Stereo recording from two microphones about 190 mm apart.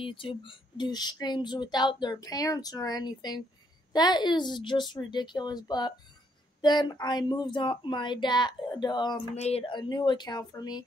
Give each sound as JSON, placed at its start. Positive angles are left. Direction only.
{"t": 0.0, "sound": "speech", "side_deg": 25}
{"t": 9.3, "sound": "speech", "side_deg": 35}